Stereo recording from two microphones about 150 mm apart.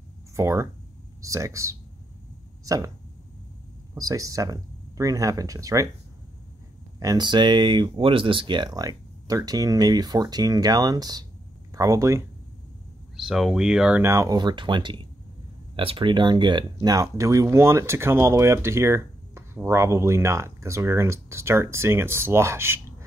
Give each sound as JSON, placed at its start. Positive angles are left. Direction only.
{"t": 0.4, "sound": "speech", "side_deg": -20}
{"t": 3.9, "sound": "speech", "side_deg": -25}
{"t": 7.0, "sound": "speech", "side_deg": -25}
{"t": 13.1, "sound": "speech", "side_deg": -5}
{"t": 14.0, "sound": "speech", "side_deg": -20}